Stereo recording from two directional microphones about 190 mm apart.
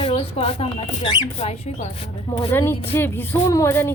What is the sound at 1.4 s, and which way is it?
Speech, 35° left (ahead or behind).